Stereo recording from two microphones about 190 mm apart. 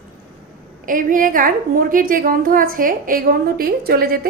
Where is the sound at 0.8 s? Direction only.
45° right (ahead or behind).